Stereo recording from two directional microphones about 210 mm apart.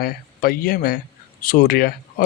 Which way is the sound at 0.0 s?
45° left (ahead or behind).